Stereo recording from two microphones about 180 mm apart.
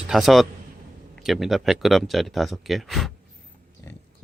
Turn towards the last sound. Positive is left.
turn(degrees=0)  # may be behind; listen again after turning